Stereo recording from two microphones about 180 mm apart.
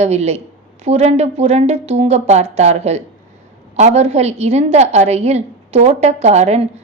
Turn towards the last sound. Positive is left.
turn(degrees=-35)  # may be behind; listen again after turning